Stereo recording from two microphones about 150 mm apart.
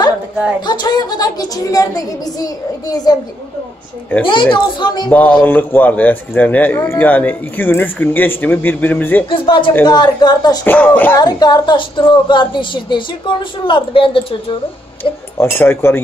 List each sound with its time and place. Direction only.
0.6 s a woman's voice: 30° left (ahead or behind)
4.2 s a woman's voice: 35° left (ahead or behind)
5.1 s a man's voice: 10° left (ahead or behind)
9.3 s a woman's voice: 35° left (ahead or behind)
10.6 s a man's voice: 10° left (ahead or behind)
11.1 s a woman's voice: 25° left (ahead or behind)
15.3 s a man's voice: 15° left (ahead or behind)